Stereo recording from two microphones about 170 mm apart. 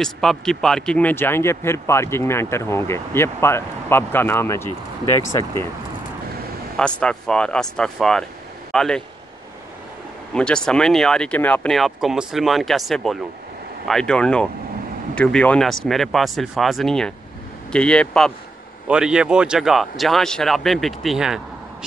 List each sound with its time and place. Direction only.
0.0 s speech: 5° left (ahead or behind)
6.8 s speech: 5° left (ahead or behind)
10.3 s speech: 5° left (ahead or behind)